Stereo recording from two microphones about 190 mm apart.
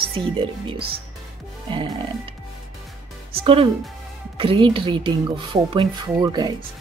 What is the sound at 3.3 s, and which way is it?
Speech, 30° right (ahead or behind).